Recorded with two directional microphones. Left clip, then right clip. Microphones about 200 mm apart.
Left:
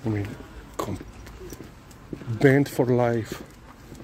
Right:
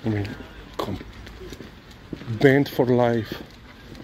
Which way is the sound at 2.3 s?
15° left (ahead or behind).